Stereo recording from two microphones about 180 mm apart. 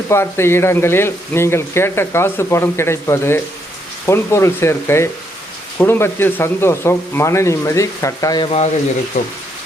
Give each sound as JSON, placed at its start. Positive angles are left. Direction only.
{"t": 0.1, "sound": "speech", "side_deg": 15}